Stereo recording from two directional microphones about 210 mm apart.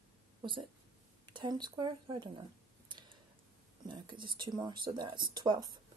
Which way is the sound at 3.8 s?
20° right (ahead or behind).